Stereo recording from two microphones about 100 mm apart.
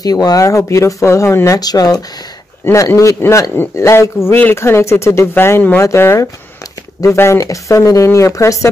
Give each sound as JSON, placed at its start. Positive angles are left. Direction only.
{"t": 0.0, "sound": "speech", "side_deg": 40}
{"t": 1.6, "sound": "speech", "side_deg": 40}
{"t": 2.6, "sound": "speech", "side_deg": 25}